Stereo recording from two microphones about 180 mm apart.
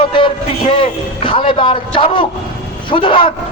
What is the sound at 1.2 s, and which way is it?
A man's voice, 30° left (ahead or behind).